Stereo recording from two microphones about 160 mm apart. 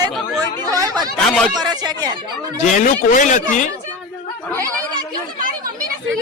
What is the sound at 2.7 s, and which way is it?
Speech, 55° left (ahead or behind).